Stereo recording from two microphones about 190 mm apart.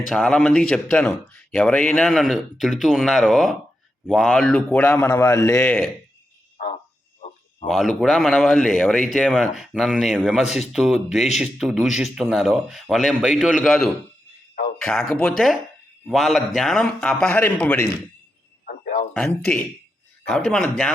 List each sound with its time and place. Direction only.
0.1 s a man's voice: 5° left (ahead or behind)
6.6 s frog: 50° left (ahead or behind)
7.7 s speech: centre (ahead or behind)
18.6 s a sound: 45° left (ahead or behind)
19.1 s a man's voice: 5° left (ahead or behind)